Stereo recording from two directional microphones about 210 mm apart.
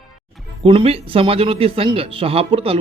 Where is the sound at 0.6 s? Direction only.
25° right (ahead or behind).